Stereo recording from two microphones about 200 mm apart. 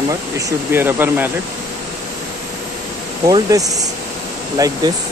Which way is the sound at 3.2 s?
20° right (ahead or behind).